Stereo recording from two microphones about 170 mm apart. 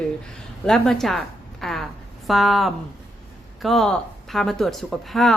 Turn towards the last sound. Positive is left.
turn(degrees=0)  # may be behind; listen again after turning